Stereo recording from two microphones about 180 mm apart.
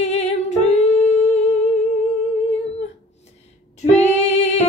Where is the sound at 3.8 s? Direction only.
40° left (ahead or behind).